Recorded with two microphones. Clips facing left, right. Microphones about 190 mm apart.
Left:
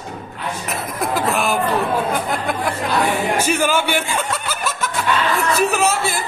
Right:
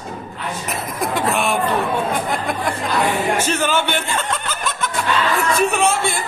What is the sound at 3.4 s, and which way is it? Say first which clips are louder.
Chuckle: left 1 dB; 10° left (ahead or behind).